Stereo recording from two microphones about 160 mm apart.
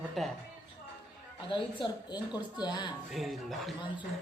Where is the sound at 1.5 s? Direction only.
30° left (ahead or behind).